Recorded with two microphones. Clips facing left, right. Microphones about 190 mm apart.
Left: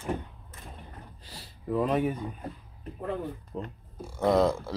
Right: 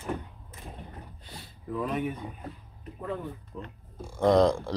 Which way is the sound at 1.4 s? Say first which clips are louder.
Left 5 dB; 35° left (ahead or behind).